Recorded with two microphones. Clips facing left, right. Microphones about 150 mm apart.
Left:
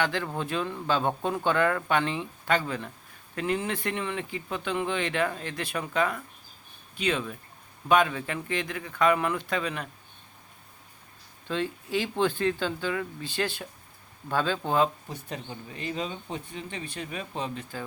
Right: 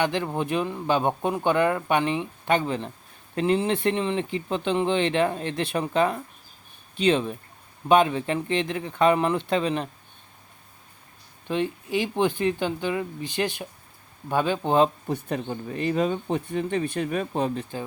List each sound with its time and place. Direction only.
0.0 s speech: 20° right (ahead or behind)
11.4 s speech: 15° right (ahead or behind)
15.0 s speech: 55° right (ahead or behind)
17.6 s speech: 25° right (ahead or behind)